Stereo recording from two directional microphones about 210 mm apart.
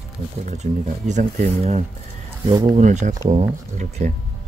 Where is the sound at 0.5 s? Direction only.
35° right (ahead or behind).